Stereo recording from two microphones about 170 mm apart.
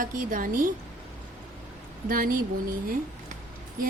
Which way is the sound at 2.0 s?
55° right (ahead or behind).